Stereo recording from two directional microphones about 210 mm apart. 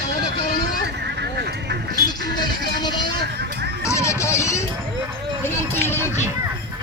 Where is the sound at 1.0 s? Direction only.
50° right (ahead or behind).